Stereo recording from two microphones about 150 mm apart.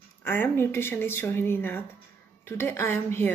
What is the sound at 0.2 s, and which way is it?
A woman's voice, 15° left (ahead or behind).